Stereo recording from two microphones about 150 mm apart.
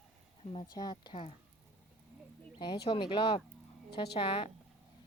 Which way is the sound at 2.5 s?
35° left (ahead or behind).